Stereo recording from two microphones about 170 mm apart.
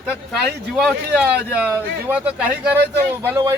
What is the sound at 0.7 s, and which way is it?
Speech, centre (ahead or behind).